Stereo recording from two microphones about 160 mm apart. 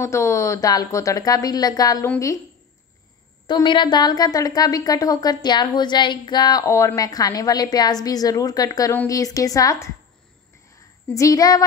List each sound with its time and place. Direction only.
0.0 s a woman's voice: 15° left (ahead or behind)
3.4 s a woman's voice: 30° left (ahead or behind)
10.7 s a sound: 20° left (ahead or behind)